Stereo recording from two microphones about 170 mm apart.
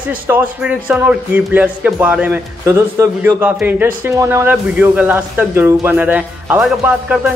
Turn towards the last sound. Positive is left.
turn(degrees=-10)  # may be behind; listen again after turning